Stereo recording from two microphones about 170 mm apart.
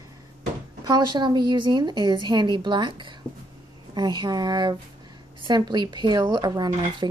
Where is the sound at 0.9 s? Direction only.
25° right (ahead or behind).